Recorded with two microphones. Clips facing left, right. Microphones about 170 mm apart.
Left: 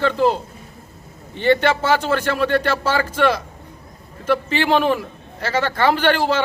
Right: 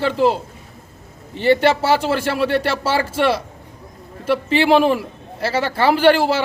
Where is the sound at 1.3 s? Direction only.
30° right (ahead or behind).